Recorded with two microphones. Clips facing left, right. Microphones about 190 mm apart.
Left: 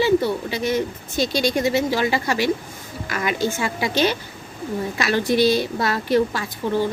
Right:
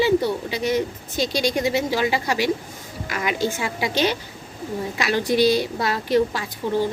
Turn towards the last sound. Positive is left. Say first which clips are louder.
# left 1 dB
turn(degrees=-15)  # may be behind; listen again after turning